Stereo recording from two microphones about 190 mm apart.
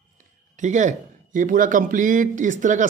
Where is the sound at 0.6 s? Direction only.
40° right (ahead or behind).